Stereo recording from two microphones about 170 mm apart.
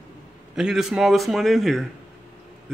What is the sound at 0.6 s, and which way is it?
Speech, 5° right (ahead or behind).